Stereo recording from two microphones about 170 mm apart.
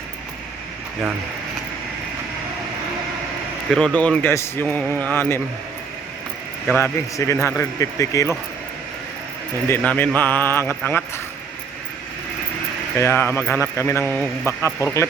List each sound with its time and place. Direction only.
3.7 s a man's voice: centre (ahead or behind)
6.7 s a man's voice: 15° left (ahead or behind)
9.6 s a man's voice: 10° left (ahead or behind)
13.0 s a man's voice: 10° left (ahead or behind)